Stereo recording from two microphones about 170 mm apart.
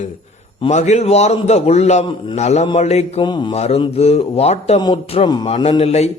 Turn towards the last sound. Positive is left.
turn(degrees=40)  # may be behind; listen again after turning